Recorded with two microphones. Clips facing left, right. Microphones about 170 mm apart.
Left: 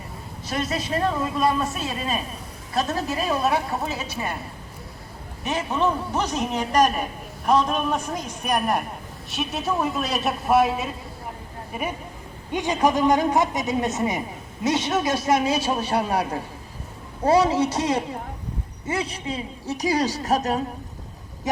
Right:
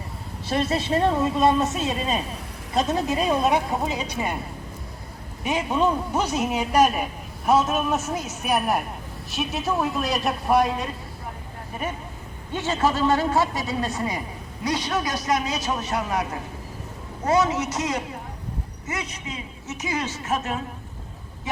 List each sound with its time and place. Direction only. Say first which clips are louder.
0.4 s a woman's voice: right 3 dB; 30° right (ahead or behind)
5.5 s a man's voice: right 1 dB; 10° right (ahead or behind); by 16.2 s 30° left (ahead or behind)
17.2 s a woman's voice: left 3 dB; 30° left (ahead or behind)